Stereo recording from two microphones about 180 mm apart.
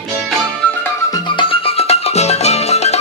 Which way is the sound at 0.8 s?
25° left (ahead or behind).